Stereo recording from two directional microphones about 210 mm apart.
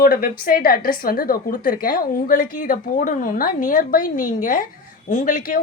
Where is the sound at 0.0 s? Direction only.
45° left (ahead or behind).